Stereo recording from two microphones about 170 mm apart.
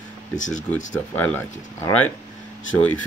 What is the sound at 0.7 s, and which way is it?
Speech, 10° left (ahead or behind).